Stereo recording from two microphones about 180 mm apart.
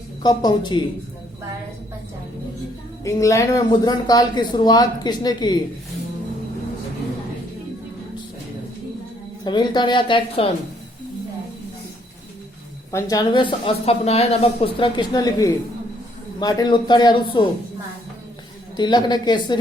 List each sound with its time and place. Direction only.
0.2 s a woman's voice: 25° left (ahead or behind)
3.0 s a woman's voice: 15° left (ahead or behind)
9.4 s a woman's voice: 25° left (ahead or behind)
12.9 s a woman's voice: 15° left (ahead or behind)
18.8 s a woman's voice: 25° left (ahead or behind)